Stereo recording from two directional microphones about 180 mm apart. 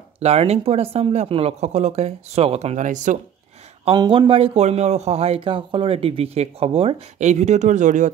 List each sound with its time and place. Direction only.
0.2 s a man's voice: 35° right (ahead or behind)
3.8 s a man's voice: 25° right (ahead or behind); by 8.1 s 45° right (ahead or behind)